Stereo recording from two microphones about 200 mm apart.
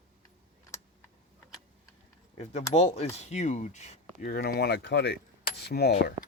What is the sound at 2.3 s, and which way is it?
Speech, 35° left (ahead or behind).